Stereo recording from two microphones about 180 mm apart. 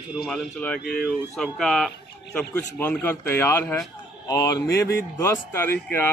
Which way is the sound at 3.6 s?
5° left (ahead or behind).